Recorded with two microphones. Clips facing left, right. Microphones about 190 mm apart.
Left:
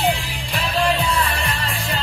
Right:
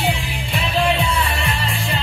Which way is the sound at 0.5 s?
Centre (ahead or behind).